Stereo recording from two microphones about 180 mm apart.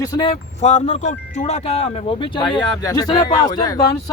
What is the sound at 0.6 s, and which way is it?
Speech, 35° left (ahead or behind).